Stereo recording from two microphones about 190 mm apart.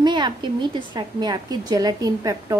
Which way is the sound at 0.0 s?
25° right (ahead or behind).